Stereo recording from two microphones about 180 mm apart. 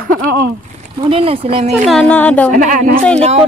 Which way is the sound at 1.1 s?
30° right (ahead or behind).